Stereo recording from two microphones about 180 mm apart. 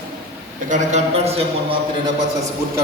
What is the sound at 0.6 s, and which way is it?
A man's voice, 40° right (ahead or behind).